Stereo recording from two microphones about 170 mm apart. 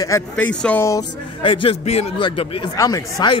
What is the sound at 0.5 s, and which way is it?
Speech, 5° left (ahead or behind).